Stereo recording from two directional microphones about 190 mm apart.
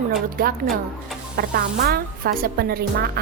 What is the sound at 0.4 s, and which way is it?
A woman's voice, 50° right (ahead or behind).